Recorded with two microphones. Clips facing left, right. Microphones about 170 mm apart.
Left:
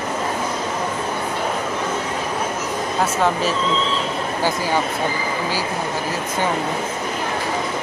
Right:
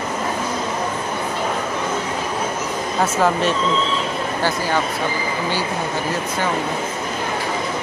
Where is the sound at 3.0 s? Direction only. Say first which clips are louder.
Right 2 dB; centre (ahead or behind).